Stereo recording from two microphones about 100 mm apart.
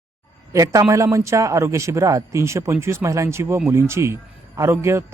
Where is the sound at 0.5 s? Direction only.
35° right (ahead or behind).